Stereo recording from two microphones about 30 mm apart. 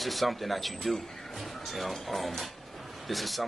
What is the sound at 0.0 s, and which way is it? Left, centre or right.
Speech, centre.